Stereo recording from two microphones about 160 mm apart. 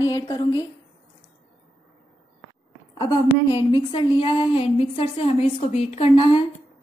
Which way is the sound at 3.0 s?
25° left (ahead or behind).